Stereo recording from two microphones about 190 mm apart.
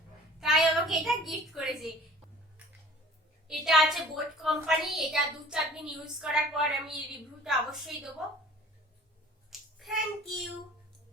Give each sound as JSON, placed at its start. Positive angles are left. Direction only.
{"t": 0.3, "sound": "a woman's voice", "side_deg": 0}
{"t": 3.4, "sound": "a woman's voice", "side_deg": 0}
{"t": 9.5, "sound": "a sound", "side_deg": 0}